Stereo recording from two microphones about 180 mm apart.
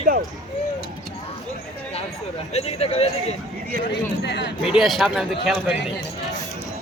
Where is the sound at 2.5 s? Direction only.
35° left (ahead or behind).